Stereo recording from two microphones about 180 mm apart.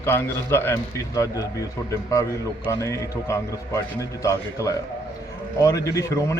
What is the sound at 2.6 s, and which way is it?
A man's voice, 15° left (ahead or behind).